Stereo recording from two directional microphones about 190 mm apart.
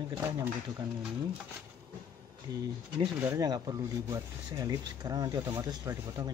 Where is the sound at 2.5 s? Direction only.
20° right (ahead or behind).